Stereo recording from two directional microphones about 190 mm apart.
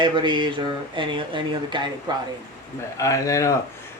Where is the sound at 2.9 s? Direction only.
15° left (ahead or behind).